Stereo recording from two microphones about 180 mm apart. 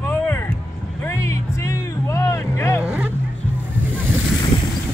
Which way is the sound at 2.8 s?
5° right (ahead or behind).